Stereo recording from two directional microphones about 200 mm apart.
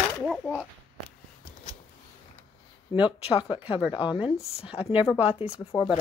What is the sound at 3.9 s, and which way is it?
Speech, 25° left (ahead or behind).